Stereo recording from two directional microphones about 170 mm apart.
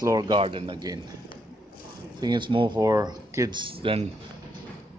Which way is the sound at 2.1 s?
25° right (ahead or behind).